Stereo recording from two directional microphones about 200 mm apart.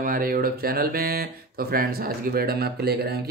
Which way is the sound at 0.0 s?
45° right (ahead or behind).